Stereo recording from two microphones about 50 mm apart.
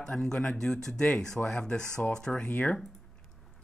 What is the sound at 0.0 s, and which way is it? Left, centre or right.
Speech, centre.